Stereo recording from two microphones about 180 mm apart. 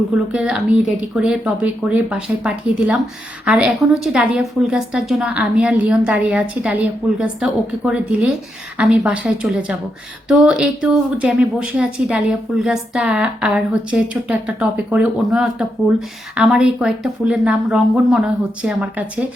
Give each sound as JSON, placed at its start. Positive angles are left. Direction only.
{"t": 0.3, "sound": "speech", "side_deg": -5}